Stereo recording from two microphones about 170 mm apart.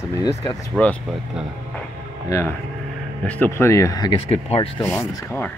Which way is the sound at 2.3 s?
15° left (ahead or behind).